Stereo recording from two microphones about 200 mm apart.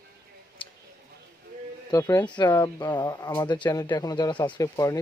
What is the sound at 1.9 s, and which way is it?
Speech, 15° left (ahead or behind).